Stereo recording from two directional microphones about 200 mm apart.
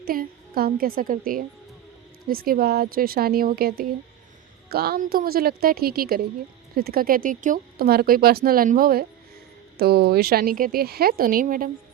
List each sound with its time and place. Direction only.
0.0 s speech: 45° right (ahead or behind)